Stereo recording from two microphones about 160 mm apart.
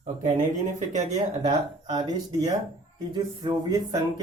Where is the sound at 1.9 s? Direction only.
25° right (ahead or behind).